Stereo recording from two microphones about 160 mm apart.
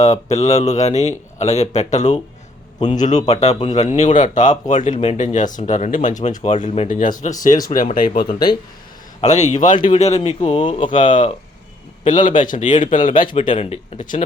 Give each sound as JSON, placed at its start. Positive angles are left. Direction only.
{"t": 0.0, "sound": "speech", "side_deg": 45}
{"t": 8.3, "sound": "speech", "side_deg": 25}
{"t": 9.2, "sound": "speech", "side_deg": 45}
{"t": 12.0, "sound": "speech", "side_deg": 55}
{"t": 13.5, "sound": "speech", "side_deg": 40}